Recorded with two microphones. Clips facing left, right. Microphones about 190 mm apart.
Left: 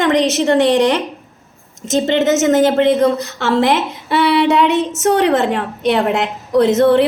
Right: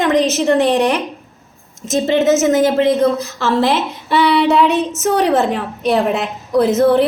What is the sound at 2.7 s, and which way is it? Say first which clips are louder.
A woman's voice: left 1 dB; 70° left (ahead or behind).